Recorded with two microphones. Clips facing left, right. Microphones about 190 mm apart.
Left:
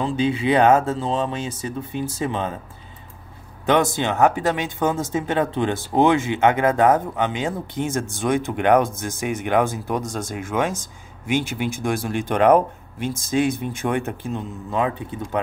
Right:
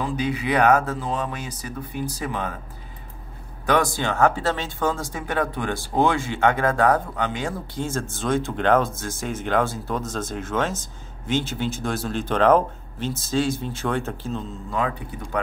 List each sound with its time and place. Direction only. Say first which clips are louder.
0.0 s speech: left 4 dB; 25° left (ahead or behind)
3.6 s speech: left 2 dB; 20° left (ahead or behind)